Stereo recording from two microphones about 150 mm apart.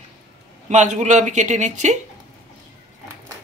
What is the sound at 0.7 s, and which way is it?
Speech, 50° right (ahead or behind).